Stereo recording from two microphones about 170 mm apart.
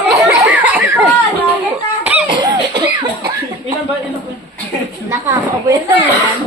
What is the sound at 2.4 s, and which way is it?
Cough, 25° right (ahead or behind).